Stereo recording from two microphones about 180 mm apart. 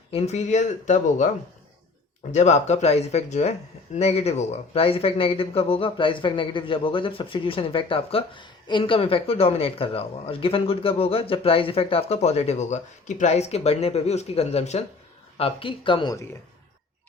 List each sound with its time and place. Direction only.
0.1 s speech: 35° left (ahead or behind)
2.3 s speech: 40° left (ahead or behind)